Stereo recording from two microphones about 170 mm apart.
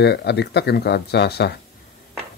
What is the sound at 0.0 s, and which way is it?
Speech, 75° left (ahead or behind).